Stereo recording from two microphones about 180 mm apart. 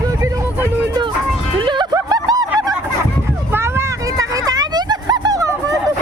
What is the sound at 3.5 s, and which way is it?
Vehicle, 15° right (ahead or behind).